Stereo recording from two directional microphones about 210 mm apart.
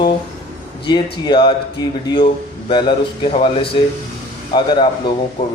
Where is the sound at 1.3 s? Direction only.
25° left (ahead or behind).